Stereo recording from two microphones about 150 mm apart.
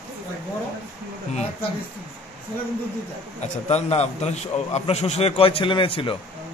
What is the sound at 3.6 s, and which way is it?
A man's voice, 45° left (ahead or behind).